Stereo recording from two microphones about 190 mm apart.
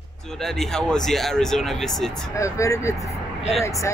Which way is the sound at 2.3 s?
15° left (ahead or behind).